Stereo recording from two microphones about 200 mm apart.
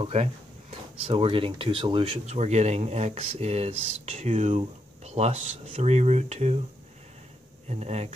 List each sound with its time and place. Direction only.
0.0 s speech: 30° right (ahead or behind)
7.7 s speech: 30° right (ahead or behind)